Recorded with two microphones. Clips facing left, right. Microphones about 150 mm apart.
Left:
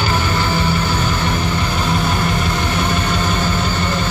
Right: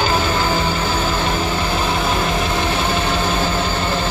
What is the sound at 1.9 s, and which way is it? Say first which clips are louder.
Vehicle: even; 25° right (ahead or behind).